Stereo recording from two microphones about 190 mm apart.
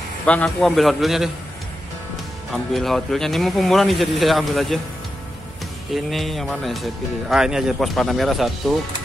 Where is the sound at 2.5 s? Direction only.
Centre (ahead or behind).